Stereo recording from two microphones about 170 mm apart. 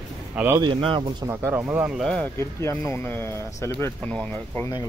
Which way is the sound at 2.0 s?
5° left (ahead or behind).